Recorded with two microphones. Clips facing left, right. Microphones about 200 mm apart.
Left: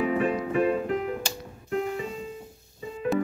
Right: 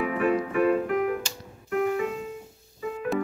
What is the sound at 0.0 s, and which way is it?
Music, 30° left (ahead or behind).